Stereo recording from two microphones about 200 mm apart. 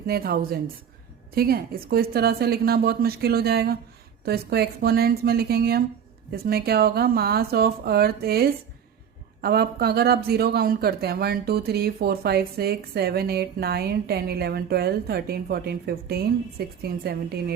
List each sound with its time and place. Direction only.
0.1 s speech: 50° right (ahead or behind)